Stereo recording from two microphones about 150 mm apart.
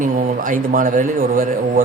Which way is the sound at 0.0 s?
65° right (ahead or behind).